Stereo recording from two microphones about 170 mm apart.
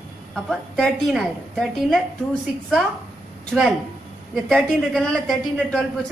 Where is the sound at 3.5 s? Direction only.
Centre (ahead or behind).